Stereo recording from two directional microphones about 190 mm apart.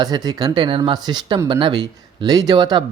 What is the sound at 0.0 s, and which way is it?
Speech, 20° right (ahead or behind).